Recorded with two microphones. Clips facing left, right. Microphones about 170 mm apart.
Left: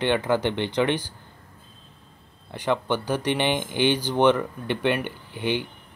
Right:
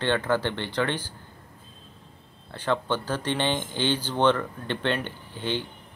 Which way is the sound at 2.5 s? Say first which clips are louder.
Left 2 dB; 15° left (ahead or behind).